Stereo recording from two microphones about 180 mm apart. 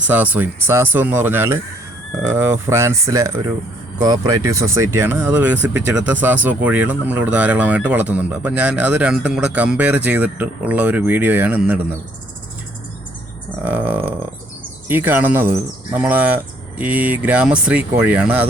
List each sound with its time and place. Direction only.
0.1 s speech: 10° right (ahead or behind)
13.7 s a sound: 10° right (ahead or behind)
14.8 s speech: 10° right (ahead or behind)